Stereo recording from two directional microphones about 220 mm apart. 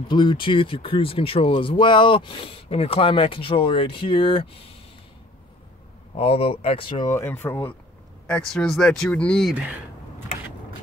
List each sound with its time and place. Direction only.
0.1 s speech: 20° left (ahead or behind)
6.1 s speech: 25° left (ahead or behind); by 9.8 s centre (ahead or behind)